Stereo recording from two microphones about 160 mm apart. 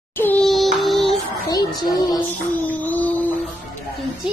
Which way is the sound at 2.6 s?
10° left (ahead or behind).